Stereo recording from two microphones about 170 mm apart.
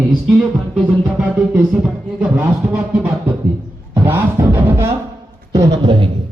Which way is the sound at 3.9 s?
15° right (ahead or behind).